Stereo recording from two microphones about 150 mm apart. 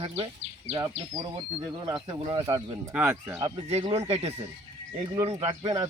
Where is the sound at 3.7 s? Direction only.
45° right (ahead or behind).